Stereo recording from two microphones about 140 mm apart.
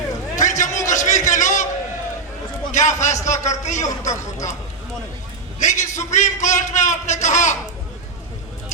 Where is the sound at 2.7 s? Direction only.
60° left (ahead or behind).